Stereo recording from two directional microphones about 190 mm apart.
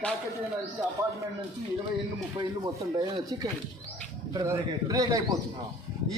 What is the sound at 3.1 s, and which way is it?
A man's voice, 20° right (ahead or behind).